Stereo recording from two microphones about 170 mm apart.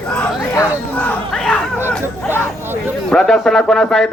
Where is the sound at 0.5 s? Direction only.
15° left (ahead or behind).